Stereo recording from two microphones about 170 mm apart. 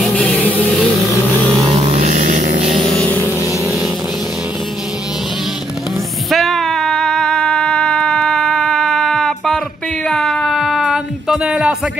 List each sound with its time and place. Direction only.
0.0 s vehicle: 5° left (ahead or behind)
1.7 s vehicle: 40° right (ahead or behind)
2.7 s vehicle: 5° left (ahead or behind)
6.3 s a sound: centre (ahead or behind)